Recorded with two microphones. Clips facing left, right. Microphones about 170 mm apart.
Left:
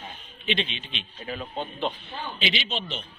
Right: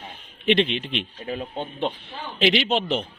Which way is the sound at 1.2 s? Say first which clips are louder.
Left 2 dB; 45° right (ahead or behind).